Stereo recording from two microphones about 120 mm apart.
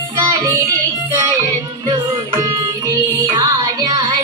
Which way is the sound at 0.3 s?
25° right (ahead or behind).